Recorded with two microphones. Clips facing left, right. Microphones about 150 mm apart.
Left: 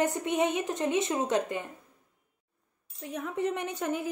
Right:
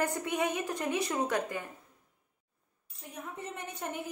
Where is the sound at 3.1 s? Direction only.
80° left.